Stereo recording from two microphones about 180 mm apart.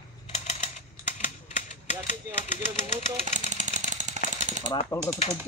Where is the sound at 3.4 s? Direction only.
40° right (ahead or behind).